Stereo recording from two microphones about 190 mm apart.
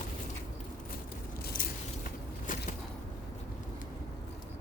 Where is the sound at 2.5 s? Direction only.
45° left (ahead or behind).